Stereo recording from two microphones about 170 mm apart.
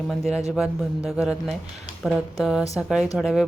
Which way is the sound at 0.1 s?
Centre (ahead or behind).